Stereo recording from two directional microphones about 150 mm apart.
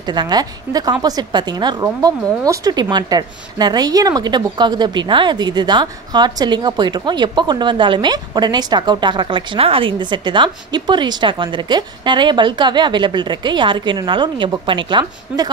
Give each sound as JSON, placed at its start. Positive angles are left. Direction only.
{"t": 0.0, "sound": "a woman's voice", "side_deg": -30}